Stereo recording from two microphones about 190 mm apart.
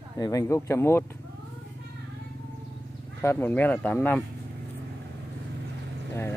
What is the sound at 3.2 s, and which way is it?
Speech, 10° left (ahead or behind).